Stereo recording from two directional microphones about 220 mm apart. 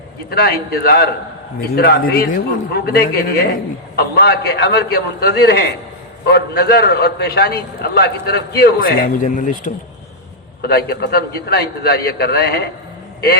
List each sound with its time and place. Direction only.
0.3 s a man's voice: 45° left (ahead or behind)
10.6 s a man's voice: 45° left (ahead or behind)